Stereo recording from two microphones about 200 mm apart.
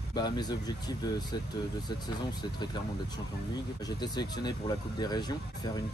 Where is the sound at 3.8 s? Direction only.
20° left (ahead or behind).